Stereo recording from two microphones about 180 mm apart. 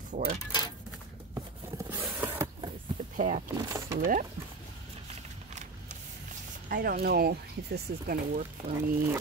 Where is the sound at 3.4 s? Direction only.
15° right (ahead or behind).